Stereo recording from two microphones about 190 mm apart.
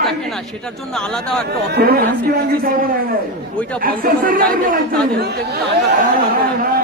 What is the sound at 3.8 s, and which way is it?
Speech, 45° right (ahead or behind).